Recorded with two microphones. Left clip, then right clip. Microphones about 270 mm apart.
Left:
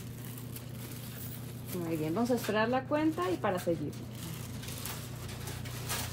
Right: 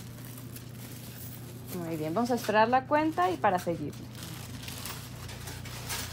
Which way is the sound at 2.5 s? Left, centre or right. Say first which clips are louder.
Right 10 dB; centre.